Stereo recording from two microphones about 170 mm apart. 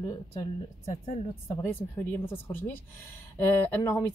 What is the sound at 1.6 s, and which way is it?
Speech, 15° left (ahead or behind).